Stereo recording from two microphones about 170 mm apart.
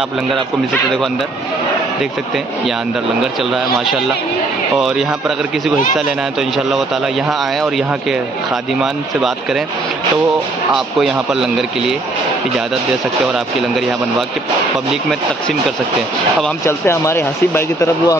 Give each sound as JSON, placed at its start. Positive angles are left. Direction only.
{"t": 4.7, "sound": "speech", "side_deg": -5}
{"t": 16.6, "sound": "speech", "side_deg": 15}